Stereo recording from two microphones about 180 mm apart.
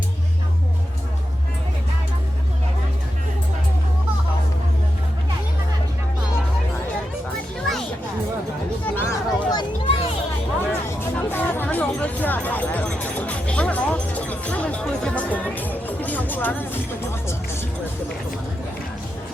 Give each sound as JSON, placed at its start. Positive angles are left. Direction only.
{"t": 8.8, "sound": "chatter", "side_deg": 10}
{"t": 9.5, "sound": "a sound", "side_deg": 30}
{"t": 10.7, "sound": "music", "side_deg": 10}